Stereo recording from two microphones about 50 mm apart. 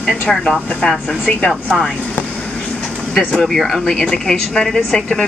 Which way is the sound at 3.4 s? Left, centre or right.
Centre.